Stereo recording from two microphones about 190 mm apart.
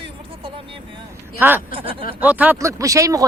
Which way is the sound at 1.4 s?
10° right (ahead or behind).